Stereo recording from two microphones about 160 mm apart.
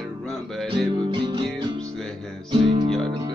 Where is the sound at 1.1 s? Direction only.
30° right (ahead or behind).